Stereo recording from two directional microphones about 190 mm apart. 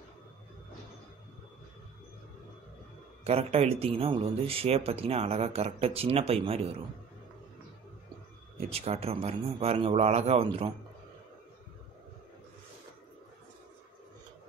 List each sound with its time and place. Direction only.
3.3 s a man's voice: 30° right (ahead or behind)
8.5 s a man's voice: 35° right (ahead or behind)